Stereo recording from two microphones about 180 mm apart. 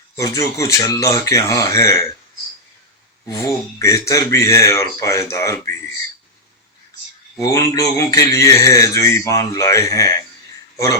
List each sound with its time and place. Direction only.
0.2 s speech: 15° left (ahead or behind)
3.2 s speech: 15° left (ahead or behind)
7.3 s speech: 20° left (ahead or behind)